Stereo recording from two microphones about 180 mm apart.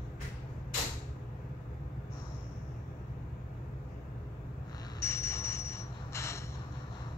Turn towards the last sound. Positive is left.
turn(degrees=15)  # may be behind; listen again after turning